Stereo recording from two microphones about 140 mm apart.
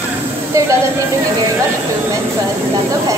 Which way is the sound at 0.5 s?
20° right (ahead or behind).